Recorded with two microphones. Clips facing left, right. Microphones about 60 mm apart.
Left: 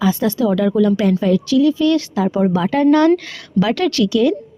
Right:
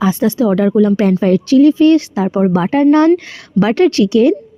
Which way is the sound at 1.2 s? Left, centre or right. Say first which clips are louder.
Right 5 dB; right.